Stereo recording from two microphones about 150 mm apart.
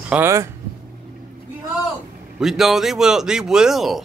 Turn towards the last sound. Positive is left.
turn(degrees=0)  # may be behind; listen again after turning